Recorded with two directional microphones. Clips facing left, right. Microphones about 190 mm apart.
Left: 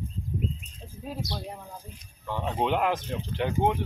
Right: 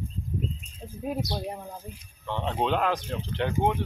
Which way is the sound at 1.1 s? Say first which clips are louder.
Right 5 dB; 20° right (ahead or behind).